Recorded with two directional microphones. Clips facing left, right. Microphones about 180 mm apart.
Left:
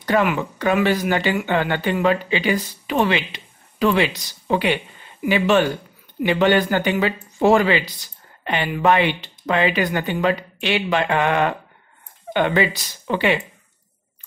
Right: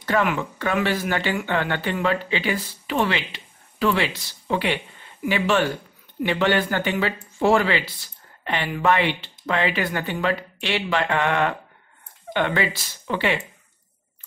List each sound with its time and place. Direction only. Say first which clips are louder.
0.0 s speech: left 3 dB; 15° left (ahead or behind)